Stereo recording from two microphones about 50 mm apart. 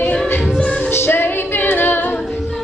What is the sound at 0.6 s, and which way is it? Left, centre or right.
Music, left.